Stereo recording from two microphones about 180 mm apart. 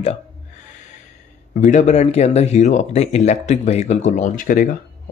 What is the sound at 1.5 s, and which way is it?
Speech, 40° left (ahead or behind).